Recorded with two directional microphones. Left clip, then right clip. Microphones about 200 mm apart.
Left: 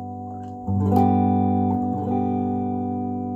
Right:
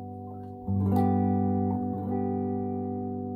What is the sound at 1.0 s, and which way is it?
Music, 35° left (ahead or behind).